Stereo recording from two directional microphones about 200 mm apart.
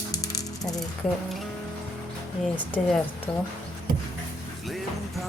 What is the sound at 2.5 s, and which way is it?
Speech, 10° left (ahead or behind).